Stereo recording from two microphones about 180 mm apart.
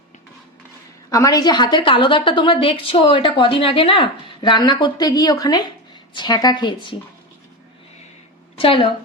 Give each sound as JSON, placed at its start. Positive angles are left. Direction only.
{"t": 1.1, "sound": "a woman's voice", "side_deg": 20}
{"t": 8.5, "sound": "a woman's voice", "side_deg": 30}